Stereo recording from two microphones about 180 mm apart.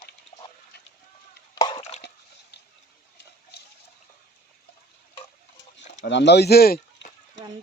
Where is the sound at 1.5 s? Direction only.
25° left (ahead or behind).